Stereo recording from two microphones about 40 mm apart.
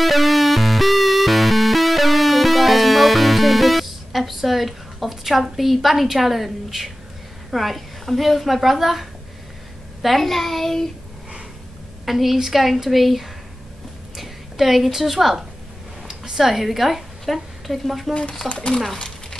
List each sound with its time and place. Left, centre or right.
0.0 s music: centre
7.5 s a woman's voice: centre
10.0 s a woman's voice: centre
12.1 s a woman's voice: centre
18.5 s speech: left